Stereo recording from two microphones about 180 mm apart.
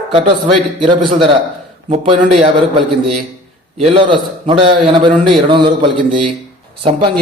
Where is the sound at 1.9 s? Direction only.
30° right (ahead or behind).